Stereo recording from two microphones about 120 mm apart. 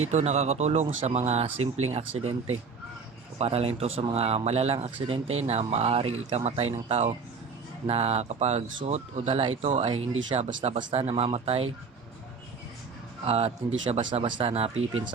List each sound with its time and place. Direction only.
0.1 s speech: 70° right (ahead or behind)
3.3 s speech: 60° right (ahead or behind)
13.2 s speech: 55° right (ahead or behind)
14.5 s speech: 60° right (ahead or behind)